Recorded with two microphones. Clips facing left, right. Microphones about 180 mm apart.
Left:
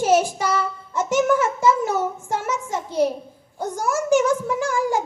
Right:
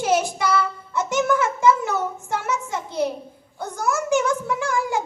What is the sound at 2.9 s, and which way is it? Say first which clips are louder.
Speech: left 4 dB; 35° left (ahead or behind).